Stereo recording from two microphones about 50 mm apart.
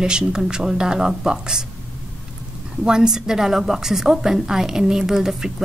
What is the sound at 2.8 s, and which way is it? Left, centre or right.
A woman's voice, centre.